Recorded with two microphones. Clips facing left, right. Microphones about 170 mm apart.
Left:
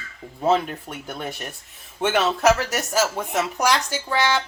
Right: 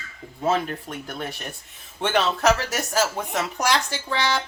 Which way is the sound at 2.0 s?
10° left (ahead or behind).